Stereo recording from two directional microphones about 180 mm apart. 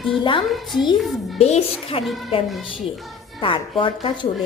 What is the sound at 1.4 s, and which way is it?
A woman's voice, 35° left (ahead or behind).